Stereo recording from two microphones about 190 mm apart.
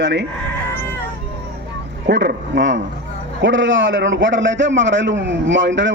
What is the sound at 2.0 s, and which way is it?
Speech, 65° right (ahead or behind).